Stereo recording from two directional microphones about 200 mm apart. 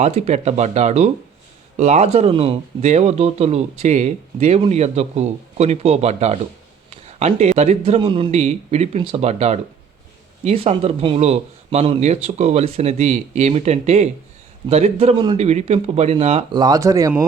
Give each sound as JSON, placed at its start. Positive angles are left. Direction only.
{"t": 0.0, "sound": "speech", "side_deg": -30}